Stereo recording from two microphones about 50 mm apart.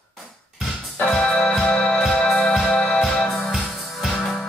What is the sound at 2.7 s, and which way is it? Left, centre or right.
Music, left.